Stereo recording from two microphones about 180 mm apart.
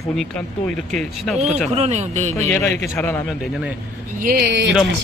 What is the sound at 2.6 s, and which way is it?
Speech, 15° left (ahead or behind).